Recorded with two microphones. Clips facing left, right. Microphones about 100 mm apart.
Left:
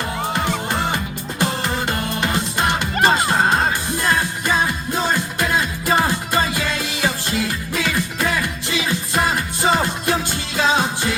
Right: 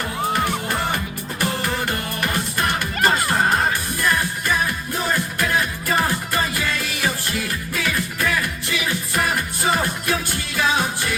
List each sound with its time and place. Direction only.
0.3 s music: 20° left (ahead or behind)